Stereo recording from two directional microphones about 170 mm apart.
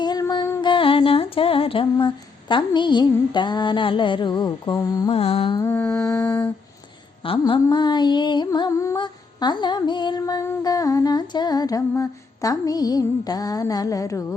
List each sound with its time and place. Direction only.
0.0 s a sound: 25° left (ahead or behind)
5.1 s music: 35° left (ahead or behind)
5.6 s mantra: 10° left (ahead or behind)
7.3 s music: 30° left (ahead or behind)